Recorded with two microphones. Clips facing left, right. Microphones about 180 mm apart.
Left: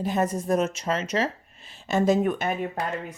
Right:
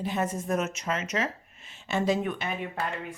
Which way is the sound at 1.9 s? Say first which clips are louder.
Left 5 dB; 45° left (ahead or behind).